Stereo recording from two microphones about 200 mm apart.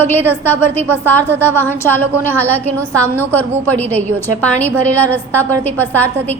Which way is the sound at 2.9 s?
10° left (ahead or behind).